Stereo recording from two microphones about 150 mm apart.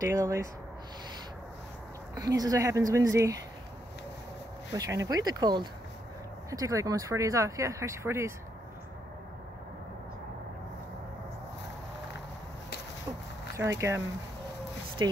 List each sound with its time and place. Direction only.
0.0 s speech: 20° right (ahead or behind)
2.1 s speech: 25° right (ahead or behind)
4.7 s speech: 20° right (ahead or behind)
13.6 s speech: 20° right (ahead or behind)